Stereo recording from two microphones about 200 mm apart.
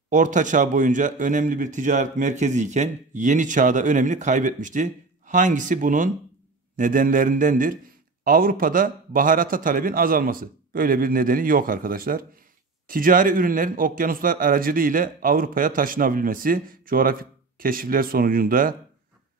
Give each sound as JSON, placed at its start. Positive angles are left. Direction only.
{"t": 0.1, "sound": "a man's voice", "side_deg": -40}